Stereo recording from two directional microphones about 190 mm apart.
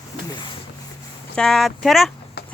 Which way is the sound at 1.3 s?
5° left (ahead or behind).